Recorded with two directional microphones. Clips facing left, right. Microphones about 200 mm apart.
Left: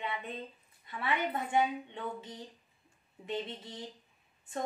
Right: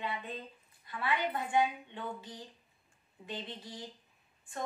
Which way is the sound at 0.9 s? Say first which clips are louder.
Even; 25° left (ahead or behind).